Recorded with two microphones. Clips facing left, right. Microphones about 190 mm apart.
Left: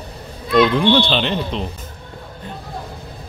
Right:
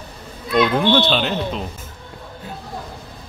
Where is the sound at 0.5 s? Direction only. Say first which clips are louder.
Left 2 dB; 5° right (ahead or behind).